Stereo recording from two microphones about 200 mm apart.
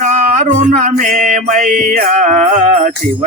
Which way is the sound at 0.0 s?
40° right (ahead or behind).